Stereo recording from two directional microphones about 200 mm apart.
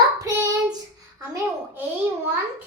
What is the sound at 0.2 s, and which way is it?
Child singing, 15° right (ahead or behind).